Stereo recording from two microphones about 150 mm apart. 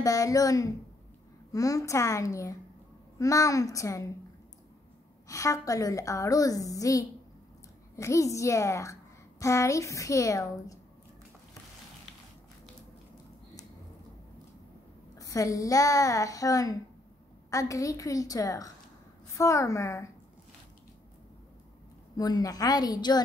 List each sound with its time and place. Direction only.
0.0 s a woman's voice: 20° left (ahead or behind)
5.3 s a woman's voice: 20° left (ahead or behind)
15.1 s a woman's voice: 20° left (ahead or behind)
22.1 s a woman's voice: 25° left (ahead or behind)